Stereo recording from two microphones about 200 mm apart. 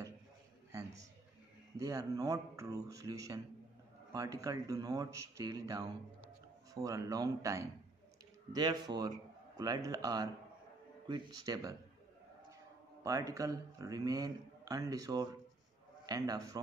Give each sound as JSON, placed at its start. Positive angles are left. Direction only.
{"t": 1.8, "sound": "a man's voice", "side_deg": -20}
{"t": 13.0, "sound": "a man's voice", "side_deg": -15}